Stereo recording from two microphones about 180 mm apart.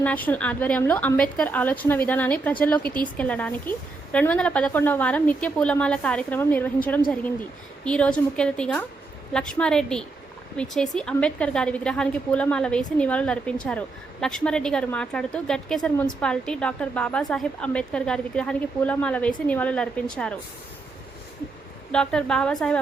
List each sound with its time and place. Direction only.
0.0 s a woman's voice: 10° left (ahead or behind)
2.8 s a woman's voice: 25° right (ahead or behind)
3.2 s a woman's voice: 10° left (ahead or behind)
7.9 s a woman's voice: 5° left (ahead or behind)
21.9 s a woman's voice: 5° left (ahead or behind)